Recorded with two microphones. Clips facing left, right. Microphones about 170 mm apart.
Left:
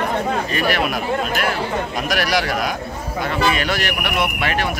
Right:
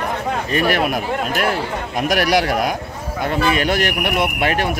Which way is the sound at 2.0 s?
55° right (ahead or behind).